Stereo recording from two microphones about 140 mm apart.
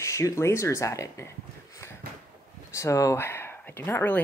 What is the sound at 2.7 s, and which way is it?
Speech, 20° left (ahead or behind).